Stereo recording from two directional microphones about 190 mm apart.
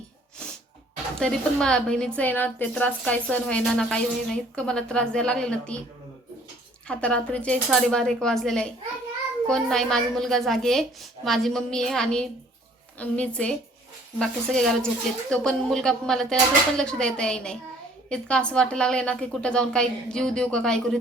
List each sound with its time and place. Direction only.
1.2 s a woman's voice: 5° left (ahead or behind)
6.8 s a woman's voice: 5° left (ahead or behind)